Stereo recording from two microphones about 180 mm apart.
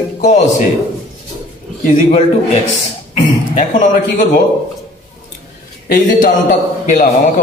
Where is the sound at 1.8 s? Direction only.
40° left (ahead or behind).